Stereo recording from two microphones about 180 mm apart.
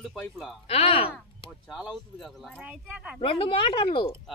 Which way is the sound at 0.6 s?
30° left (ahead or behind).